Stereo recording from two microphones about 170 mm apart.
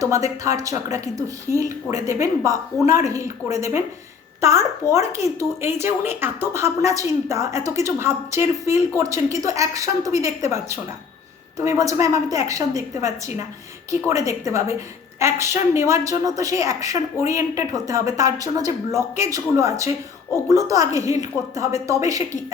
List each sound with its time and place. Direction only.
0.4 s speech: 20° right (ahead or behind)
3.6 s a woman's voice: 15° right (ahead or behind)